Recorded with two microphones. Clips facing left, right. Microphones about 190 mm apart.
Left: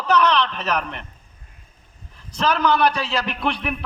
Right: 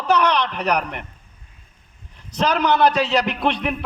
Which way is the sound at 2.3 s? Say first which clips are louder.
Right 1 dB; 20° right (ahead or behind).